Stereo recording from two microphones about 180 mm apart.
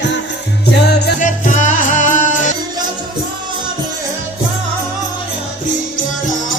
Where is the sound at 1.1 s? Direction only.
45° left (ahead or behind).